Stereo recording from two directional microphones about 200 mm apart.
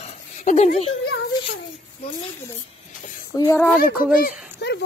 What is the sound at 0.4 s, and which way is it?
Speech, 35° left (ahead or behind).